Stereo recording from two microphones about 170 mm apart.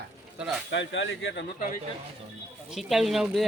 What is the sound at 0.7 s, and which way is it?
Speech, 90° left.